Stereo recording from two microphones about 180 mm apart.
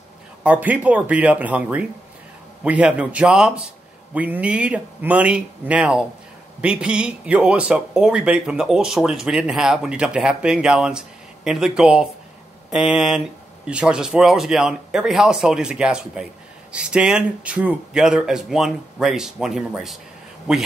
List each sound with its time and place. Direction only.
0.4 s speech: 10° right (ahead or behind)